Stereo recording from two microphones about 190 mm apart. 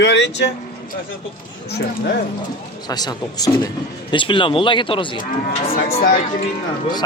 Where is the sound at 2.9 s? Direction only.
20° left (ahead or behind).